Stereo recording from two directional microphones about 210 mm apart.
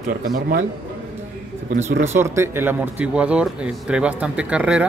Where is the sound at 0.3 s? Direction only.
45° right (ahead or behind).